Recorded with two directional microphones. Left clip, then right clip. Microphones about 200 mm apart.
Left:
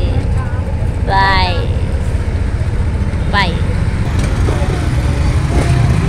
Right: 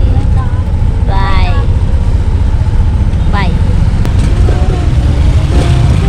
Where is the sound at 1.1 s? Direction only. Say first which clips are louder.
Left 6 dB; centre (ahead or behind).